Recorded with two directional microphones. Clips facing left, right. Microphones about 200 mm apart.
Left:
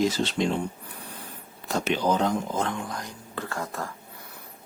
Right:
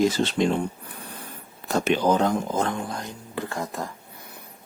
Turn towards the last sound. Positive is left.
turn(degrees=-15)  # may be behind; listen again after turning